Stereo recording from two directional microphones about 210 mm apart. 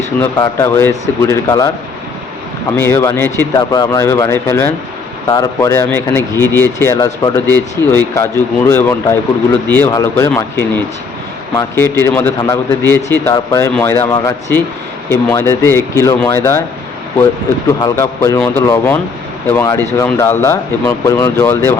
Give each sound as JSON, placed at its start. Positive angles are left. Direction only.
{"t": 0.3, "sound": "speech", "side_deg": 15}
{"t": 17.7, "sound": "speech", "side_deg": 15}